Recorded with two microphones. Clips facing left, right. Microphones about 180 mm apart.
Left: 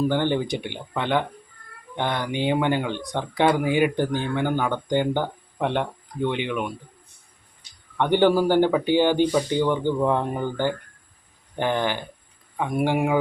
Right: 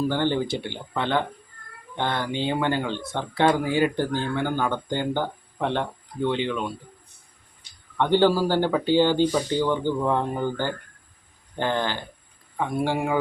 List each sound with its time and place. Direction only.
0.1 s speech: 15° left (ahead or behind)
7.9 s speech: 15° left (ahead or behind)